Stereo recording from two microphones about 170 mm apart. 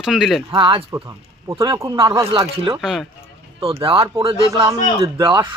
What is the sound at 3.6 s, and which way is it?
Speech, 30° right (ahead or behind).